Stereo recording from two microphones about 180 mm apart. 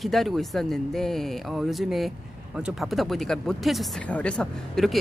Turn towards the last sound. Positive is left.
turn(degrees=5)  # may be behind; listen again after turning